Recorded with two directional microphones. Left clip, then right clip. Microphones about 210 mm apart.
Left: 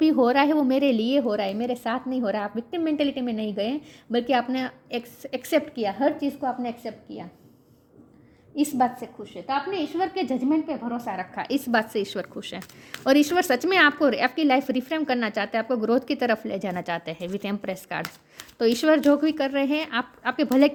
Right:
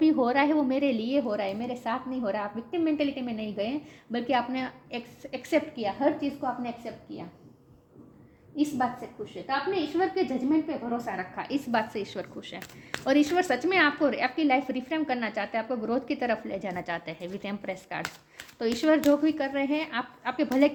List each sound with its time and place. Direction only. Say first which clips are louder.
0.0 s a woman's voice: left 4 dB; 45° left (ahead or behind)
8.5 s a woman's voice: left 5 dB; 55° left (ahead or behind)